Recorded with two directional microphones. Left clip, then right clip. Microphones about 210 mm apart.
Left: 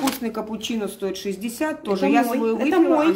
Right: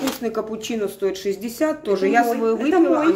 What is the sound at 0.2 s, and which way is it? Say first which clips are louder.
Speech: right 3 dB; 5° left (ahead or behind).